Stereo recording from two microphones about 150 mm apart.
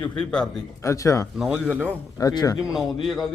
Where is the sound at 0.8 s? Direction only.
20° left (ahead or behind).